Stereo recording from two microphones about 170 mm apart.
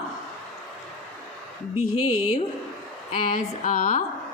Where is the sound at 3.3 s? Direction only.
50° left (ahead or behind).